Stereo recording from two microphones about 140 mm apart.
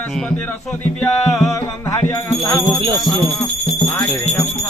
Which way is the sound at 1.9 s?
20° left (ahead or behind).